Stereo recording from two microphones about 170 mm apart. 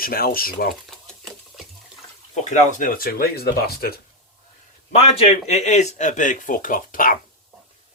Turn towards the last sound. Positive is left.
turn(degrees=55)  # may be behind; listen again after turning